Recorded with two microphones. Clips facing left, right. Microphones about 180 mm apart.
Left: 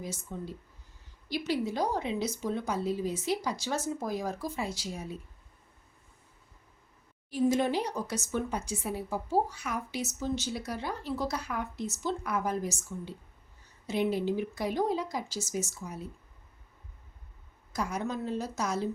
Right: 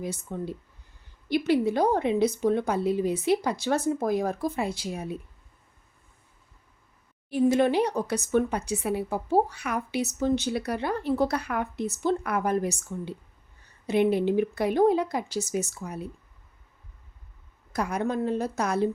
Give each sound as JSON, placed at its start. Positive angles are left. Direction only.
{"t": 0.0, "sound": "speech", "side_deg": -60}
{"t": 7.3, "sound": "speech", "side_deg": -65}
{"t": 17.7, "sound": "speech", "side_deg": -60}